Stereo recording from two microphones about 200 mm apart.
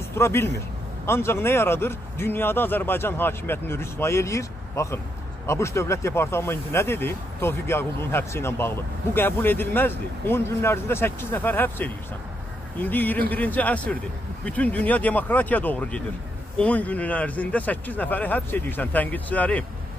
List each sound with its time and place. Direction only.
0.1 s speech: 10° left (ahead or behind)